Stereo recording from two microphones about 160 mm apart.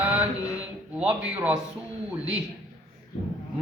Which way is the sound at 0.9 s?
10° right (ahead or behind).